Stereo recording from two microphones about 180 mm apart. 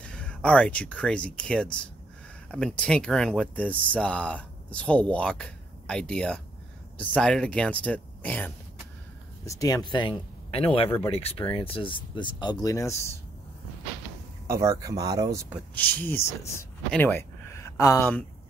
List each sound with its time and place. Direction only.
0.0 s speech: 5° left (ahead or behind)
9.5 s speech: 20° left (ahead or behind)
14.5 s speech: 20° right (ahead or behind)
15.7 s speech: 10° left (ahead or behind)